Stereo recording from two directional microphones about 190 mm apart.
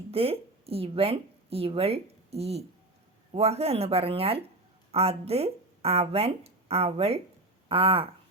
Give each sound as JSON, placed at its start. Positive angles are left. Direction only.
{"t": 0.1, "sound": "speech", "side_deg": -30}